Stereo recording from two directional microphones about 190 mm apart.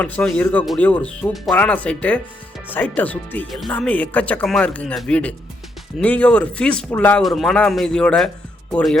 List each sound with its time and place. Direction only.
0.0 s speech: 5° left (ahead or behind)